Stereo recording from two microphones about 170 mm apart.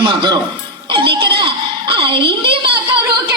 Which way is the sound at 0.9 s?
30° right (ahead or behind).